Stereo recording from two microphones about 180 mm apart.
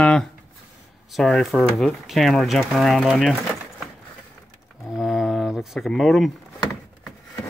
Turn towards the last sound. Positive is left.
turn(degrees=0)  # may be behind; listen again after turning